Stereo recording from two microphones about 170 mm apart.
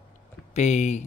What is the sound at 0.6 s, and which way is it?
Speech, 45° left (ahead or behind).